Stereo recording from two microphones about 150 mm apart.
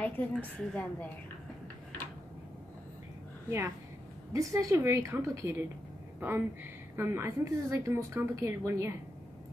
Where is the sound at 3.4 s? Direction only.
20° right (ahead or behind).